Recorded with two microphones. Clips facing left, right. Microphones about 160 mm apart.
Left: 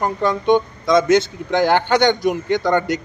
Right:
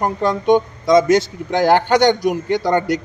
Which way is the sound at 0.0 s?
40° right (ahead or behind).